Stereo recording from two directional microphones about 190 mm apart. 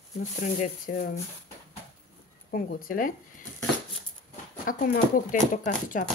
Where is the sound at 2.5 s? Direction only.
50° left (ahead or behind).